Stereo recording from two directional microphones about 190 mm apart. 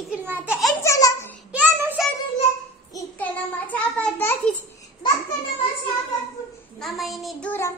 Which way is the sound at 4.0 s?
10° left (ahead or behind).